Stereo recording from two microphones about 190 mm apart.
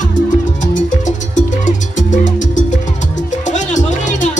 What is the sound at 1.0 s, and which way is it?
Music, 40° left (ahead or behind).